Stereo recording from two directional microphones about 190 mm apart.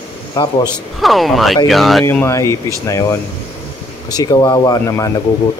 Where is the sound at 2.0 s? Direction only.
15° left (ahead or behind).